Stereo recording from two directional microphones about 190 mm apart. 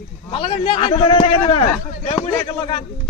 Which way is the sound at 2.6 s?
30° left (ahead or behind).